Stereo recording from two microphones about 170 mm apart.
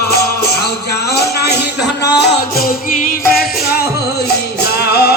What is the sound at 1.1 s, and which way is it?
Music, 75° left (ahead or behind).